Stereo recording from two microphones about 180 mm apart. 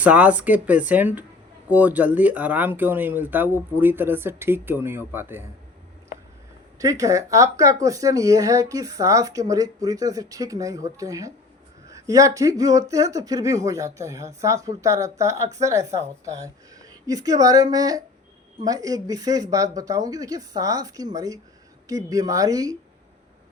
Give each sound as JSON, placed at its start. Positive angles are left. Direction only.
{"t": 0.0, "sound": "speech", "side_deg": -10}
{"t": 6.7, "sound": "speech", "side_deg": -20}